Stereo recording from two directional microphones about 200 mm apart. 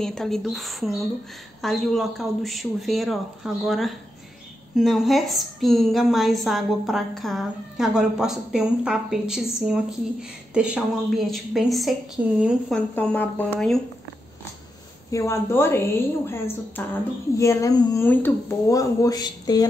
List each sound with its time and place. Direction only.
0.0 s a woman's voice: centre (ahead or behind)
15.0 s speech: 15° left (ahead or behind)